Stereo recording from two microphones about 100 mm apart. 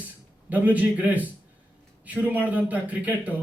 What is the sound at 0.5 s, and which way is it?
Speech, 15° right (ahead or behind).